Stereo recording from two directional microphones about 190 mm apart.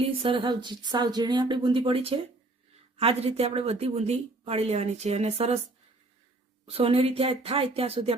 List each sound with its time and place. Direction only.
0.2 s a woman's voice: 25° right (ahead or behind)
6.7 s a woman's voice: 30° right (ahead or behind)